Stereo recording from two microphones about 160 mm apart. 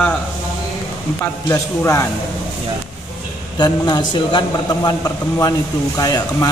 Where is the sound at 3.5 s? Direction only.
25° left (ahead or behind).